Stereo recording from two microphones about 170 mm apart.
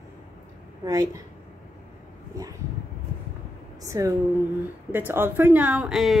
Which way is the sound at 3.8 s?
20° right (ahead or behind).